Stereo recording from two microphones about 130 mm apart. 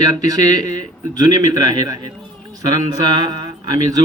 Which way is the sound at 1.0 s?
30° right (ahead or behind).